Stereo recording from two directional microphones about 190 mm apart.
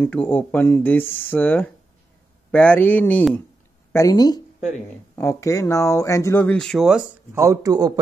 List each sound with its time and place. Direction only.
0.0 s speech: 10° left (ahead or behind)
7.3 s a man's voice: 15° right (ahead or behind)